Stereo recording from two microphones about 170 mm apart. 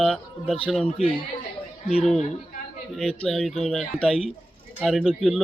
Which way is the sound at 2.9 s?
Centre (ahead or behind).